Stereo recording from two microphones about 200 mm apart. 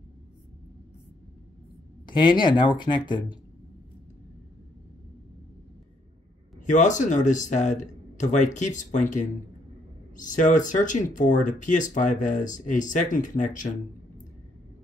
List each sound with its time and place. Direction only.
2.0 s speech: 20° left (ahead or behind)
6.6 s speech: 40° left (ahead or behind)